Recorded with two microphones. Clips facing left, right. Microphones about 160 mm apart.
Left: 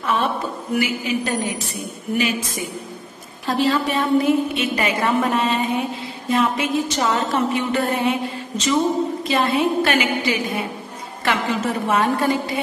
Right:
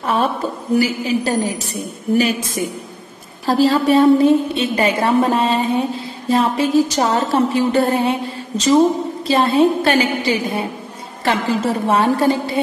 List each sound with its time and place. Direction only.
0.0 s a woman's voice: 40° right (ahead or behind)
3.4 s a woman's voice: 35° right (ahead or behind)